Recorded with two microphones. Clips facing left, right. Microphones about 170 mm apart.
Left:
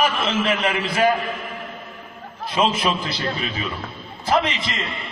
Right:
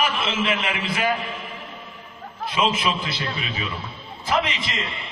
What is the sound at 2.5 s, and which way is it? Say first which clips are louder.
A man's voice: left 2 dB; 40° left (ahead or behind).